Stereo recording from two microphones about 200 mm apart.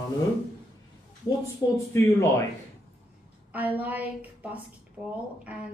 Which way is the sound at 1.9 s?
15° left (ahead or behind).